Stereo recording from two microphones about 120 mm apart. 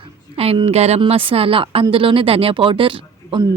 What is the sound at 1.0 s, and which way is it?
A man's voice, 50° right (ahead or behind).